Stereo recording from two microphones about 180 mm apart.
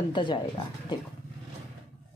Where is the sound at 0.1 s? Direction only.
25° left (ahead or behind).